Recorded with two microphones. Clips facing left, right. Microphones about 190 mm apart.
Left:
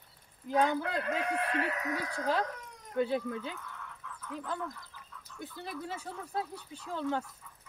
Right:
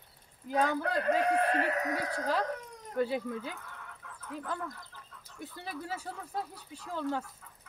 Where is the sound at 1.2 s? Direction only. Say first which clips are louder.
Right 4 dB; 40° right (ahead or behind).